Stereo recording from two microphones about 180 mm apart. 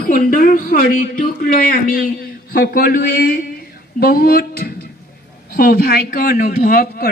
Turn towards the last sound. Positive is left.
turn(degrees=60)  # may be behind; listen again after turning